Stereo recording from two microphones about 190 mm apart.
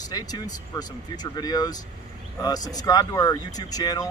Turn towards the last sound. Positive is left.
turn(degrees=20)  # may be behind; listen again after turning